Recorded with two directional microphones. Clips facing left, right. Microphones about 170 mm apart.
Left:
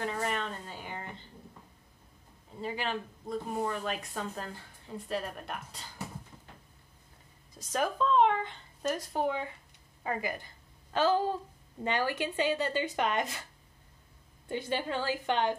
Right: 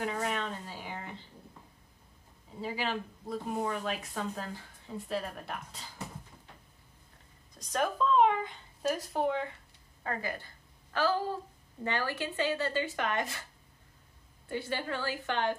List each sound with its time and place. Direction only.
0.0 s a woman's voice: centre (ahead or behind)
2.6 s speech: 5° right (ahead or behind)
7.5 s speech: 5° left (ahead or behind)
10.0 s a woman's voice: 15° left (ahead or behind)
14.5 s speech: 20° left (ahead or behind)